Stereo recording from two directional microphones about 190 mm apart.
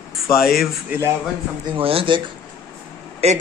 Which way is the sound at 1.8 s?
30° right (ahead or behind).